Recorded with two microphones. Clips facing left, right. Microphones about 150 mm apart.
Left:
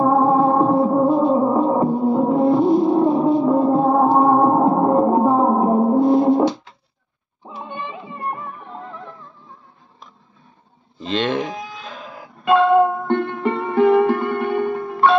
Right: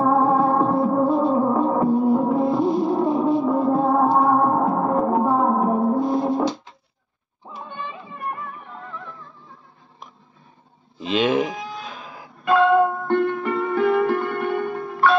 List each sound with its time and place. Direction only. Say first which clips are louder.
0.0 s music: left 3 dB; 20° left (ahead or behind)
11.0 s livestock: right 1 dB; 10° right (ahead or behind)
12.4 s music: left 2 dB; 25° left (ahead or behind)